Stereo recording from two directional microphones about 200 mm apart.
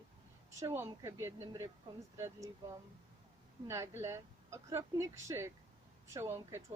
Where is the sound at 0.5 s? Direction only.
15° right (ahead or behind).